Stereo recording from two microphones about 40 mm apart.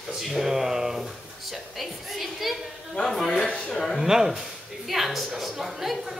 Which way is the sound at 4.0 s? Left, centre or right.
Centre.